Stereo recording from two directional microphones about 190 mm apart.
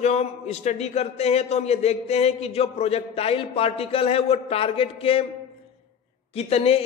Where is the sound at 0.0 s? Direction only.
35° left (ahead or behind).